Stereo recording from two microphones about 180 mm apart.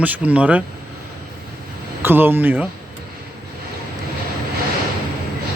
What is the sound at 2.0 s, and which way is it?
Speech, 10° right (ahead or behind).